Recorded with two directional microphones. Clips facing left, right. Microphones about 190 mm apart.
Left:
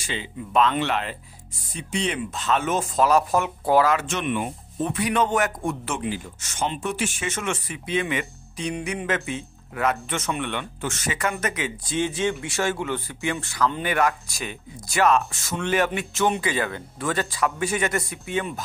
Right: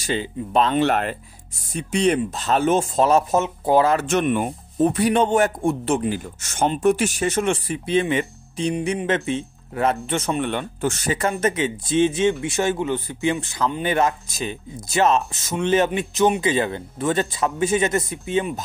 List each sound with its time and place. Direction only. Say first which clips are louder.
0.0 s speech: right 7 dB; 40° right (ahead or behind); by 3.9 s 20° right (ahead or behind)
3.9 s speech: right 5 dB; 45° right (ahead or behind)
6.0 s speech: right 4 dB; 45° right (ahead or behind); by 18.5 s 25° right (ahead or behind)